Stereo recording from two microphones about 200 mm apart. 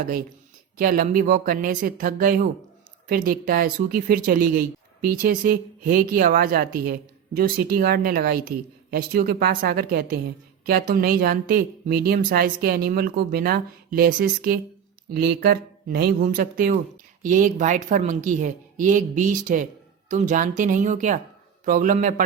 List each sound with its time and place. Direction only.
0.0 s a woman's voice: 45° right (ahead or behind)